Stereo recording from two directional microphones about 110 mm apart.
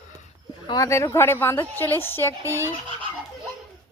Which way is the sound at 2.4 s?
25° right (ahead or behind).